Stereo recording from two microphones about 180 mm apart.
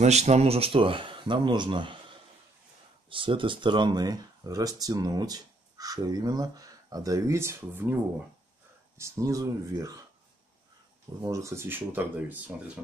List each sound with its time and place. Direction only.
0.0 s speech: 40° right (ahead or behind)
3.1 s speech: 30° right (ahead or behind)
11.2 s speech: 15° right (ahead or behind)